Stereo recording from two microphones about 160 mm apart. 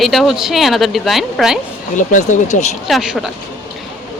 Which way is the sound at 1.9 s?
55° left (ahead or behind).